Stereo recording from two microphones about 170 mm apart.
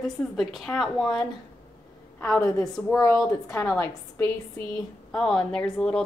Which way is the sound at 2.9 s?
15° left (ahead or behind).